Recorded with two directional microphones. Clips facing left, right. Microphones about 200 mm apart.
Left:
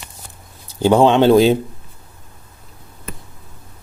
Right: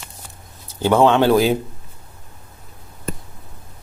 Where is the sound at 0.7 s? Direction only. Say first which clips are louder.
Left 2 dB; 15° left (ahead or behind).